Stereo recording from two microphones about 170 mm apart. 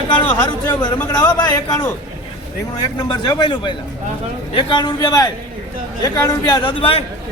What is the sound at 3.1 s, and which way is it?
A man's voice, 25° left (ahead or behind).